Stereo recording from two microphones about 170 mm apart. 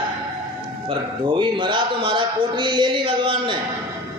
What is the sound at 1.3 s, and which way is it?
A man's voice, 25° right (ahead or behind).